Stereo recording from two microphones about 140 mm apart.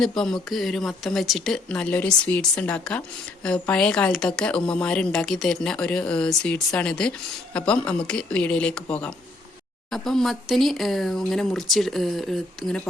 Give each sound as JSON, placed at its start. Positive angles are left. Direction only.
{"t": 0.0, "sound": "speech", "side_deg": 5}